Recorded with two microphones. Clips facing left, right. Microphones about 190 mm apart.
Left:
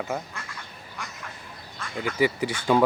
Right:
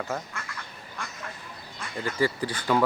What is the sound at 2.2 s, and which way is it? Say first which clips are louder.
Speech: left 3 dB; 20° left (ahead or behind).